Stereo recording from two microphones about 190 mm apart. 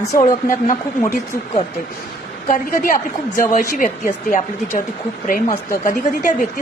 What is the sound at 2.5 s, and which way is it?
A woman's voice, 45° left (ahead or behind).